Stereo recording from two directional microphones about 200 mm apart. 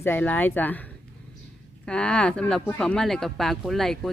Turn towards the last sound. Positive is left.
turn(degrees=0)  # may be behind; listen again after turning